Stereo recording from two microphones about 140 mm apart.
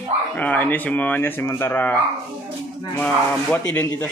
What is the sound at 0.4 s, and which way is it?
Speech, 10° left (ahead or behind).